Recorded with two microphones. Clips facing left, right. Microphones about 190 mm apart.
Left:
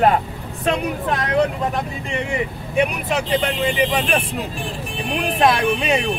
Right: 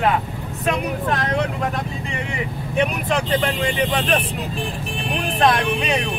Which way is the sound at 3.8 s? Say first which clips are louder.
Even; 10° left (ahead or behind).